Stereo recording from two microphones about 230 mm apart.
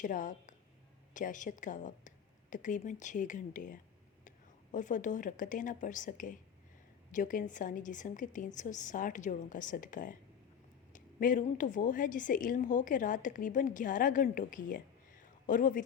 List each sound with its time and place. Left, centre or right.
0.0 s a woman's voice: left